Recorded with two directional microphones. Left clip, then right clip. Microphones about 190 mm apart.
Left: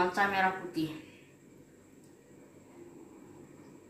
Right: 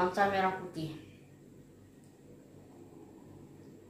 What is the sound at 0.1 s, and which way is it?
Speech, 15° right (ahead or behind).